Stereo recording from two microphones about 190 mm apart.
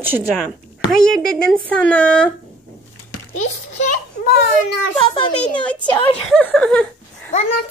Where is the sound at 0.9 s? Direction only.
Centre (ahead or behind).